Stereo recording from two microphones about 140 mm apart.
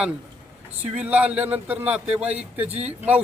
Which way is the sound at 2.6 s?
45° right (ahead or behind).